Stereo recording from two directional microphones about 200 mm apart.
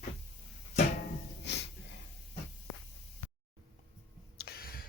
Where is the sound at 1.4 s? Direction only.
60° left (ahead or behind).